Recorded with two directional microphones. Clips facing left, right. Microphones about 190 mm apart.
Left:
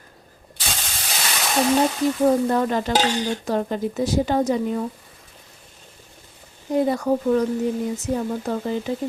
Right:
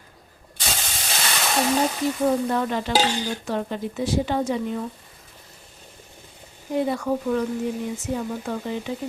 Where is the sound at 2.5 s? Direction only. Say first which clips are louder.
Left 3 dB; 40° left (ahead or behind).